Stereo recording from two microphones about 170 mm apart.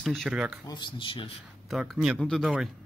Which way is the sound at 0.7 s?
25° left (ahead or behind).